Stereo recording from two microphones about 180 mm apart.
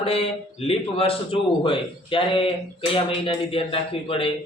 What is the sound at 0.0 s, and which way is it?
A man's voice, 35° left (ahead or behind).